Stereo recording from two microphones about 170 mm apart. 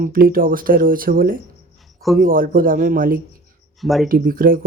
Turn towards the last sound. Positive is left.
turn(degrees=-60)  # may be behind; listen again after turning